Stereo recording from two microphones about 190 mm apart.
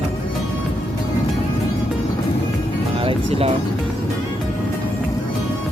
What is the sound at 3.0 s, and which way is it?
Speech, 30° right (ahead or behind).